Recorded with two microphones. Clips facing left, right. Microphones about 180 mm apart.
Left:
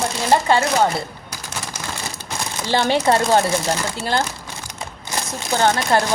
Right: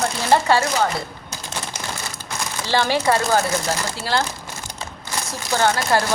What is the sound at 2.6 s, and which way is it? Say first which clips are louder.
Speech: left 2 dB; 20° left (ahead or behind).